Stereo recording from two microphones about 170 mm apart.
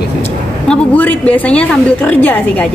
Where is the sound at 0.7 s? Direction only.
10° left (ahead or behind).